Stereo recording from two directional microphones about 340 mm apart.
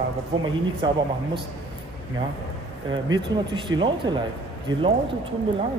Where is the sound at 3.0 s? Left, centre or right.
Centre.